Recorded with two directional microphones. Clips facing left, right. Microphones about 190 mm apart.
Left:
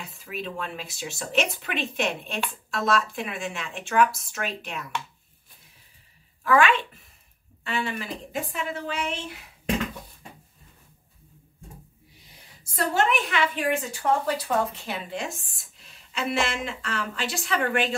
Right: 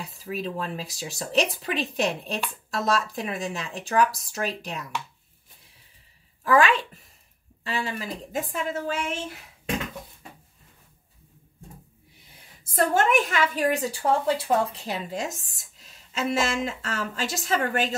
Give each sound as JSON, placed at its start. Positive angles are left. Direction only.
{"t": 0.0, "sound": "a woman's voice", "side_deg": -35}
{"t": 6.4, "sound": "a woman's voice", "side_deg": -35}
{"t": 12.6, "sound": "a woman's voice", "side_deg": -50}